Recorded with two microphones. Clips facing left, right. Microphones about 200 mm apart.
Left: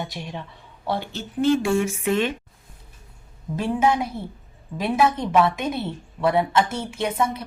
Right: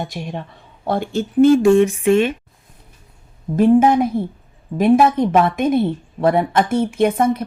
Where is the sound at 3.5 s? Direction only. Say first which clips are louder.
Right 9 dB; 50° right (ahead or behind).